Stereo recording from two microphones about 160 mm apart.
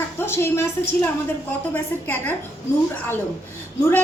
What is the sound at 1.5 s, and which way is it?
Speech, 10° left (ahead or behind).